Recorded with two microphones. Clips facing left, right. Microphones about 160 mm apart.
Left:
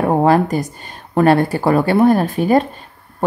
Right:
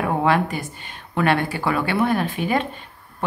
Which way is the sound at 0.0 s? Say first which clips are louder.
Left 6 dB; 40° left (ahead or behind).